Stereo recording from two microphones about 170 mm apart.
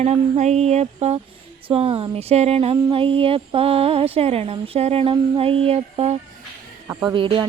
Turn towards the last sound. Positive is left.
turn(degrees=-30)  # may be behind; listen again after turning